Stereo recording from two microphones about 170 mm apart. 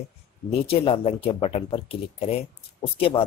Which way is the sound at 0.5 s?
35° left (ahead or behind).